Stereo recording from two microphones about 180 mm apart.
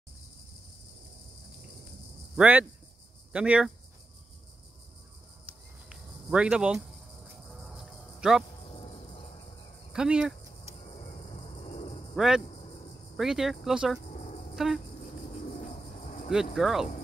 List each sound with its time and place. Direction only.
2.3 s speech: 10° right (ahead or behind)
5.9 s cricket: 5° right (ahead or behind)
8.7 s music: 35° left (ahead or behind)
9.9 s cricket: 5° right (ahead or behind)
12.2 s cricket: centre (ahead or behind)
14.1 s cricket: 40° left (ahead or behind)
14.5 s a sound: centre (ahead or behind)
15.7 s a sound: 40° left (ahead or behind)
16.5 s cricket: centre (ahead or behind)